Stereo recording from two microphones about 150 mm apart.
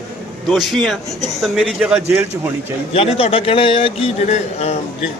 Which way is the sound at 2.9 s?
40° left (ahead or behind).